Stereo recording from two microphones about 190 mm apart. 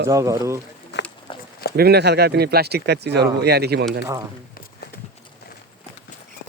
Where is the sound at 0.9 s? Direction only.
65° left (ahead or behind).